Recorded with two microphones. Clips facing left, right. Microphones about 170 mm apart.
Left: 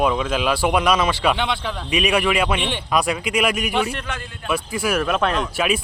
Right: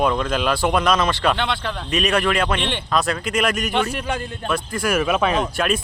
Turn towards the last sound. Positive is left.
turn(degrees=0)  # may be behind; listen again after turning